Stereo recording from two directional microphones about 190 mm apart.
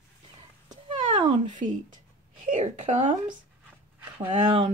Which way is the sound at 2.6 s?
40° right (ahead or behind).